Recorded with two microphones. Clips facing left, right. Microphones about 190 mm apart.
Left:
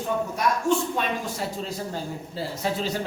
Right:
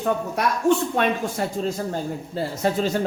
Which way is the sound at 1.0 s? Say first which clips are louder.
Right 5 dB; 55° right (ahead or behind).